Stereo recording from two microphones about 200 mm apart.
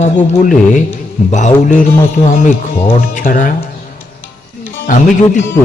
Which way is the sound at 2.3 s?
40° left (ahead or behind).